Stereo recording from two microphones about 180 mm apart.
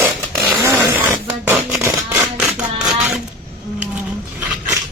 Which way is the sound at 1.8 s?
15° right (ahead or behind).